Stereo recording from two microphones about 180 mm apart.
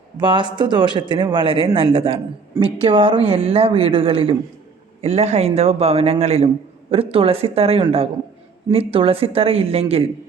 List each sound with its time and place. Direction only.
0.2 s a man's voice: 25° right (ahead or behind)